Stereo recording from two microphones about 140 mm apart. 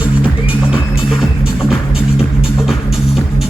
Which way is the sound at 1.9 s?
45° left (ahead or behind).